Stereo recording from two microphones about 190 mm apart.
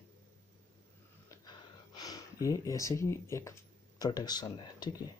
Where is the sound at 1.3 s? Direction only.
20° left (ahead or behind).